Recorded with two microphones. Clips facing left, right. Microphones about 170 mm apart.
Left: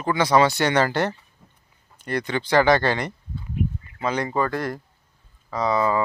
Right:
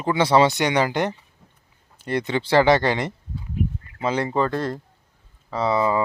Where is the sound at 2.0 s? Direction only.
25° right (ahead or behind).